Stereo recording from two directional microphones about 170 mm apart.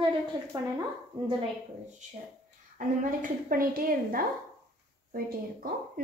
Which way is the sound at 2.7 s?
50° right (ahead or behind).